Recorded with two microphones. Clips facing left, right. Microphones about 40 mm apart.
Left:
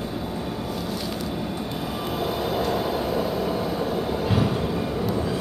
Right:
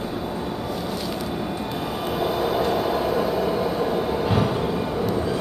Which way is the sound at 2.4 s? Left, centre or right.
Centre.